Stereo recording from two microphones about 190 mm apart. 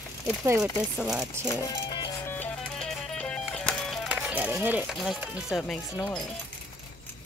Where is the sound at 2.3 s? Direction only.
5° left (ahead or behind).